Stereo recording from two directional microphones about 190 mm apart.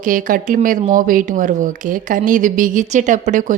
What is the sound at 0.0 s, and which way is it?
A woman's voice, 45° right (ahead or behind).